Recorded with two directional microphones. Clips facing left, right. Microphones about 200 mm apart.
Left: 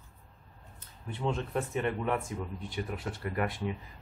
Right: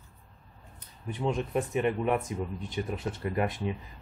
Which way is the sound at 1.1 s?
15° right (ahead or behind).